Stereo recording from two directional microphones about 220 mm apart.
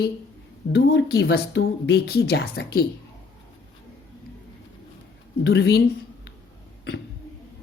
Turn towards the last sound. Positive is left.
turn(degrees=50)  # may be behind; listen again after turning